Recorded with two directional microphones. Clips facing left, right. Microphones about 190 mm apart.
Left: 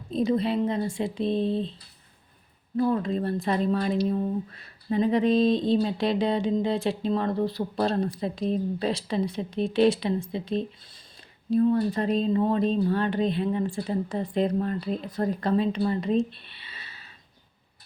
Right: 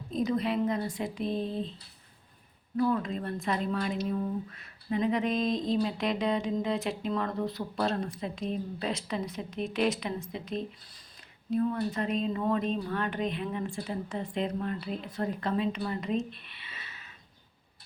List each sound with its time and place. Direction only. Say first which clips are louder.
0.1 s speech: left 4 dB; 30° left (ahead or behind)
2.7 s speech: left 4 dB; 30° left (ahead or behind)